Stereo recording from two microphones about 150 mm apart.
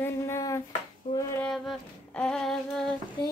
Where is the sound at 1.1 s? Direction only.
30° left (ahead or behind).